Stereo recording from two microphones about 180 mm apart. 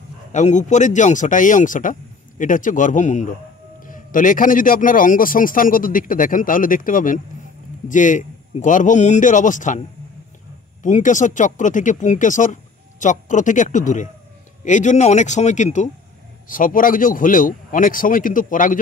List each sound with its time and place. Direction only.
0.3 s speech: 40° left (ahead or behind)